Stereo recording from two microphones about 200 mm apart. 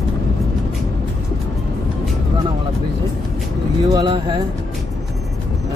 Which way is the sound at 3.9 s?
20° right (ahead or behind).